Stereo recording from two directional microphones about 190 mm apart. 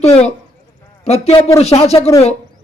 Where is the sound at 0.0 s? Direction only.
35° left (ahead or behind).